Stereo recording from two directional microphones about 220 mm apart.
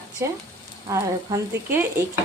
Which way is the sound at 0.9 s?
15° right (ahead or behind).